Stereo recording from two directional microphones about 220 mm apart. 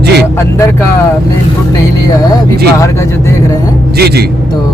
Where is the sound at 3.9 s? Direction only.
45° right (ahead or behind).